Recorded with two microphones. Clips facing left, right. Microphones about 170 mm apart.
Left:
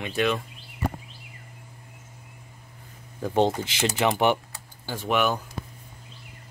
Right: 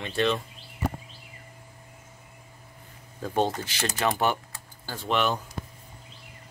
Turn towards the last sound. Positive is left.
turn(degrees=5)  # may be behind; listen again after turning